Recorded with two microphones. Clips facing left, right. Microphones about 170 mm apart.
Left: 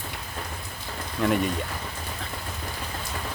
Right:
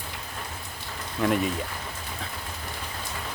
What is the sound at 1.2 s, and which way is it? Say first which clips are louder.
Speech: left 1 dB; centre (ahead or behind).